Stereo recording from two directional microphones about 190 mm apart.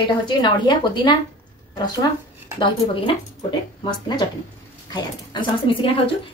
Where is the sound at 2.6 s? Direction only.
25° left (ahead or behind).